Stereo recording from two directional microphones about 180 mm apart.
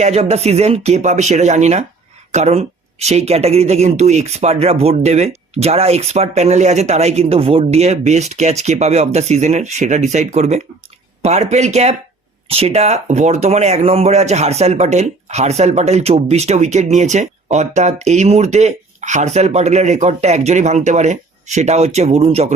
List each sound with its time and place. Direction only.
0.0 s speech: 35° right (ahead or behind)